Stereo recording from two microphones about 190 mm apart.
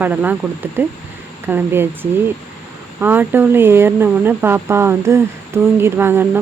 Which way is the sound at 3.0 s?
10° right (ahead or behind).